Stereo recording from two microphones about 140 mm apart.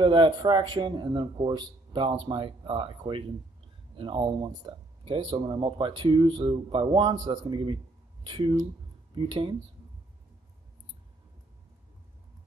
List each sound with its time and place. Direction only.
0.0 s speech: 35° right (ahead or behind)